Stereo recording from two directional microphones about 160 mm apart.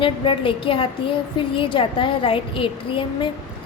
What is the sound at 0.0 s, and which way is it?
A woman's voice, 35° left (ahead or behind).